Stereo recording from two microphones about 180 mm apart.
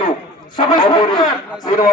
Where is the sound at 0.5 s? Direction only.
25° left (ahead or behind).